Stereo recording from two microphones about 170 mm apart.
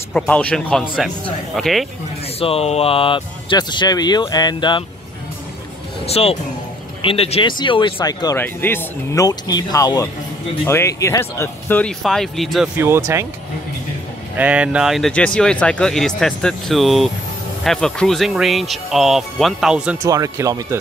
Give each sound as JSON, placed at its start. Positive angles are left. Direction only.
{"t": 0.1, "sound": "speech", "side_deg": 5}
{"t": 2.4, "sound": "speech", "side_deg": 35}
{"t": 6.0, "sound": "speech", "side_deg": 35}
{"t": 12.0, "sound": "speech", "side_deg": 0}
{"t": 12.7, "sound": "speech", "side_deg": -15}
{"t": 14.3, "sound": "speech", "side_deg": -10}
{"t": 20.0, "sound": "speech", "side_deg": -20}